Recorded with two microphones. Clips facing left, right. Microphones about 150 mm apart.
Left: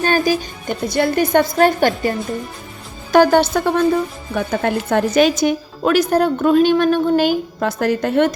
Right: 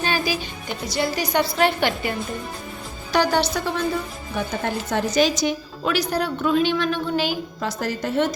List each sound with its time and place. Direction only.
0.0 s a woman's voice: 45° left (ahead or behind)